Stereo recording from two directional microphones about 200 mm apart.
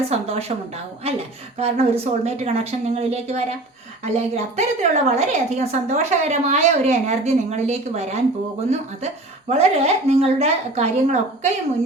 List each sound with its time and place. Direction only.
0.1 s a woman's voice: 30° right (ahead or behind)
9.5 s a woman's voice: 30° right (ahead or behind)